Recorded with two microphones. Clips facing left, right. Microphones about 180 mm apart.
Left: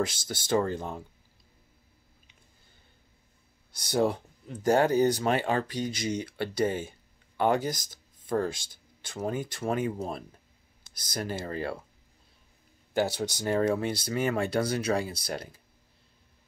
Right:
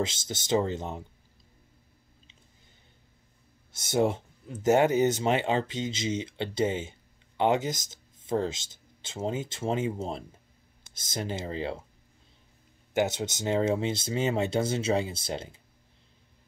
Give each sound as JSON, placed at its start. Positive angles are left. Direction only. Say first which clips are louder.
{"t": 0.0, "sound": "speech", "louder": "left 1 dB", "side_deg": -20}
{"t": 3.7, "sound": "speech", "louder": "right 1 dB", "side_deg": -20}
{"t": 12.9, "sound": "speech", "louder": "right 1 dB", "side_deg": -20}